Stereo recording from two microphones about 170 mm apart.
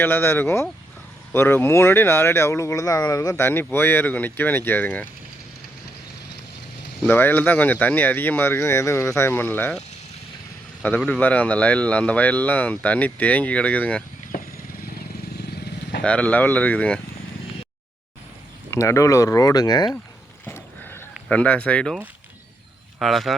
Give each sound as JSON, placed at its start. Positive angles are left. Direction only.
{"t": 0.0, "sound": "speech", "side_deg": 10}
{"t": 7.1, "sound": "speech", "side_deg": 10}
{"t": 10.8, "sound": "speech", "side_deg": 5}
{"t": 15.4, "sound": "vehicle", "side_deg": 75}
{"t": 16.0, "sound": "speech", "side_deg": 10}
{"t": 18.7, "sound": "speech", "side_deg": 15}
{"t": 20.4, "sound": "a sound", "side_deg": 15}
{"t": 21.2, "sound": "speech", "side_deg": 10}
{"t": 23.0, "sound": "speech", "side_deg": 0}